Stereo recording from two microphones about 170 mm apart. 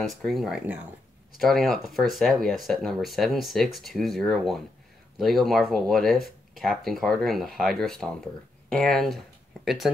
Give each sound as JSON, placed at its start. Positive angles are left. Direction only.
{"t": 0.0, "sound": "speech", "side_deg": 0}